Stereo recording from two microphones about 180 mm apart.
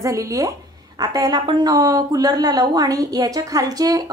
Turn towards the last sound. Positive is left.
turn(degrees=-20)  # may be behind; listen again after turning